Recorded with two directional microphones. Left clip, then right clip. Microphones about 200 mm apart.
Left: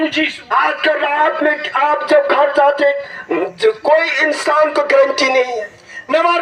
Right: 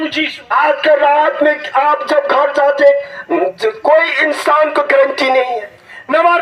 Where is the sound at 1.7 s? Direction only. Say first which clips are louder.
Right 1 dB; 50° right (ahead or behind).